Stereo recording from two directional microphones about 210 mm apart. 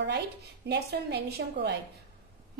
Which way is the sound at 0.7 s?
55° right (ahead or behind).